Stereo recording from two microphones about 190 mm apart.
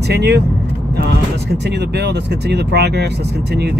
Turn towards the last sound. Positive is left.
turn(degrees=-60)  # may be behind; listen again after turning